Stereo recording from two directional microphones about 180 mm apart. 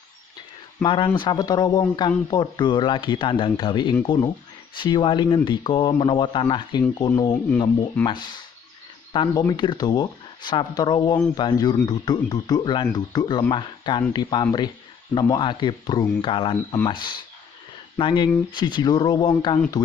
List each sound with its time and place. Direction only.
0.8 s speech: 25° left (ahead or behind)